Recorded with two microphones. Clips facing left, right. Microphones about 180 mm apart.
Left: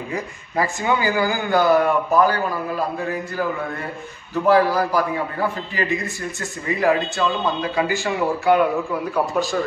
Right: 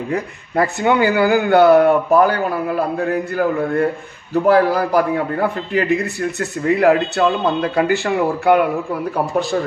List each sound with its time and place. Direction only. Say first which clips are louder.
0.1 s a man's voice: right 5 dB; 60° right (ahead or behind)